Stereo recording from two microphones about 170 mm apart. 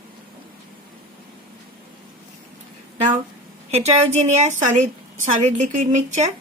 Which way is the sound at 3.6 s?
40° right (ahead or behind).